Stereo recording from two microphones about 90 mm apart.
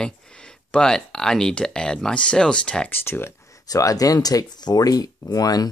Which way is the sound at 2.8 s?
25° left (ahead or behind).